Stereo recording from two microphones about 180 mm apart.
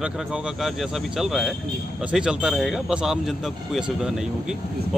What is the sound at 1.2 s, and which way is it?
Speech, centre (ahead or behind).